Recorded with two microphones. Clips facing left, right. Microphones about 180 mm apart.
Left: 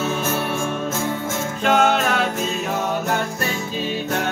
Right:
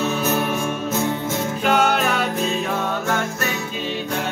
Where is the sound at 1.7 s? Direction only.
10° right (ahead or behind).